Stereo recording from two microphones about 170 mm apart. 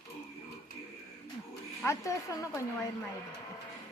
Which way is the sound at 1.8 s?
20° left (ahead or behind).